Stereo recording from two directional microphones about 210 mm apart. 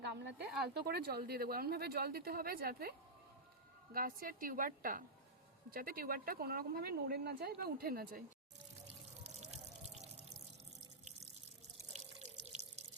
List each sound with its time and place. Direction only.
0.1 s speech: 50° right (ahead or behind)
3.9 s a woman's voice: 40° right (ahead or behind)
9.2 s drip: 30° right (ahead or behind)
12.5 s drip: 35° right (ahead or behind)